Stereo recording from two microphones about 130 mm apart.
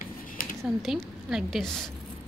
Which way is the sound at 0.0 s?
90° left.